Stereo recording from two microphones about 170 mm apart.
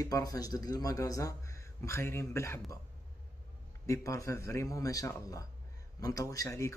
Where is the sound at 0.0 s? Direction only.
20° left (ahead or behind).